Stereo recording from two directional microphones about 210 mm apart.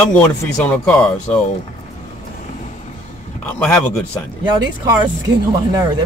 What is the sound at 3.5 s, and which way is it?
Speech, 5° left (ahead or behind).